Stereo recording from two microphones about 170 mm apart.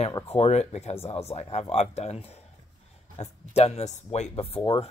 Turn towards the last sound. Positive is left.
turn(degrees=30)  # may be behind; listen again after turning